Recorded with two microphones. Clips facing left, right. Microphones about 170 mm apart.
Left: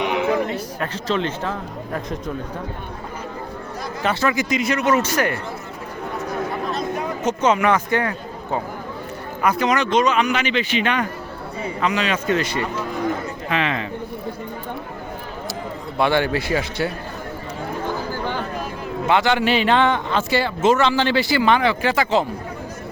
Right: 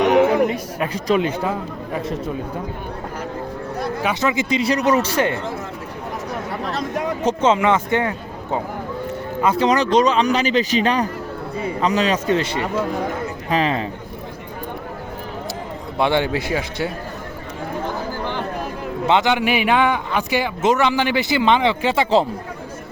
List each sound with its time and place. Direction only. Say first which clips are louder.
0.0 s a sound: right 8 dB; 45° right (ahead or behind)
0.4 s a man's voice: right 4 dB; 10° right (ahead or behind)
4.0 s a man's voice: left 2 dB; 20° right (ahead or behind)
7.3 s a man's voice: right 1 dB; 25° right (ahead or behind)
9.4 s speech: right 2 dB; 25° right (ahead or behind)
16.0 s a man's voice: even; 20° right (ahead or behind)
19.0 s a man's voice: right 1 dB; 20° right (ahead or behind)